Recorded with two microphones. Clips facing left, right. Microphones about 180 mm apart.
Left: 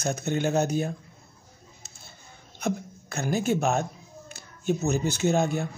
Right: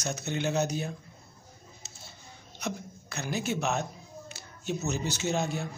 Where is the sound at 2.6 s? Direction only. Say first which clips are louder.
Left 6 dB; 50° left (ahead or behind).